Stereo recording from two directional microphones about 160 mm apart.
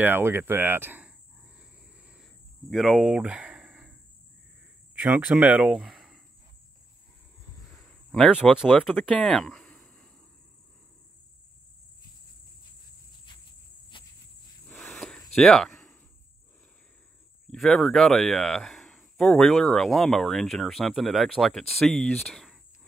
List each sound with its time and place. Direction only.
0.0 s cricket: 15° right (ahead or behind)
4.9 s speech: 10° right (ahead or behind)
7.6 s a sound: 5° left (ahead or behind)
13.9 s cricket: 30° left (ahead or behind)
14.7 s a sound: 5° left (ahead or behind)
17.5 s speech: 5° left (ahead or behind)